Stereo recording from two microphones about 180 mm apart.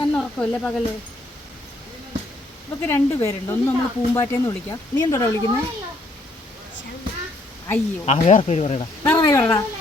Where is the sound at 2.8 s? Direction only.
15° left (ahead or behind).